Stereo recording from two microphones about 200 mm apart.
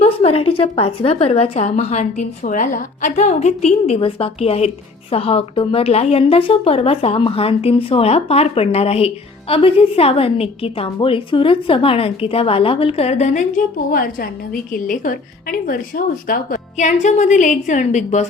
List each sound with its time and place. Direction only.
0.0 s a woman's voice: 30° left (ahead or behind)
13.9 s a woman's voice: 45° left (ahead or behind)